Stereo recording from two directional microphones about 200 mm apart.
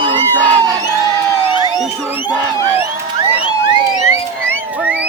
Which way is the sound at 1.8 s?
5° right (ahead or behind).